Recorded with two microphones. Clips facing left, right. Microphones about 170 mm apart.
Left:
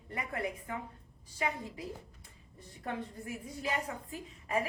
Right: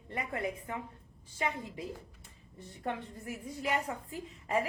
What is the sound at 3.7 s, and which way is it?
Speech, 25° right (ahead or behind).